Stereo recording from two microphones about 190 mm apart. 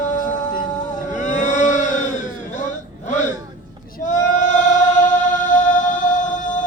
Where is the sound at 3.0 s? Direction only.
40° left (ahead or behind).